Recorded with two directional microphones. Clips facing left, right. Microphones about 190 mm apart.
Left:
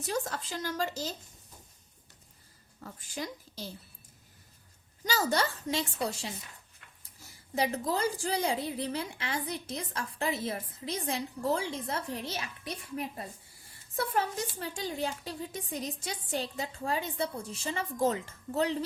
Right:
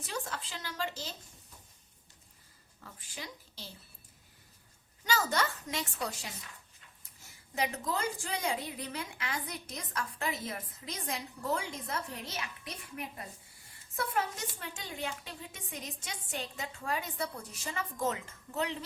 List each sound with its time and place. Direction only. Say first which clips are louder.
0.1 s speech: left 6 dB; 40° left (ahead or behind)
2.8 s speech: left 7 dB; 40° left (ahead or behind)
5.0 s a woman's voice: left 2 dB; 35° left (ahead or behind)
7.5 s a woman's voice: left 4 dB; 35° left (ahead or behind)